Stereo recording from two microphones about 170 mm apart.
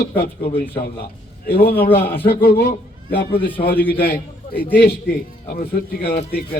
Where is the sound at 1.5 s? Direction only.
65° left (ahead or behind).